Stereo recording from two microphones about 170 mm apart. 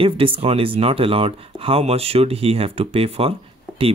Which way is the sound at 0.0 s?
30° right (ahead or behind).